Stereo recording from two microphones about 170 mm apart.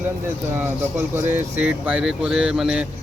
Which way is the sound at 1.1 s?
10° right (ahead or behind).